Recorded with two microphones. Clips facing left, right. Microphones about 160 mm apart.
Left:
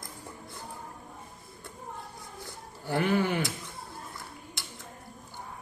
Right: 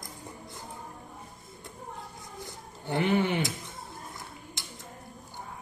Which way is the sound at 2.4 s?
20° right (ahead or behind).